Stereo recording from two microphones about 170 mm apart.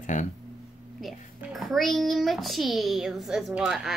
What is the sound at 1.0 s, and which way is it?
A child's voice, centre (ahead or behind).